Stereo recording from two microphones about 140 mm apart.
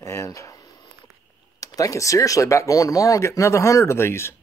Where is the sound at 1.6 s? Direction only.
25° left (ahead or behind).